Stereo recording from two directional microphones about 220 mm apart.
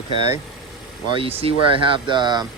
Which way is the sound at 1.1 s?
25° right (ahead or behind).